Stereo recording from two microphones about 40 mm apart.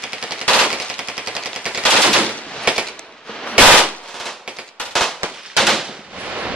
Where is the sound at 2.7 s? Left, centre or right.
Right.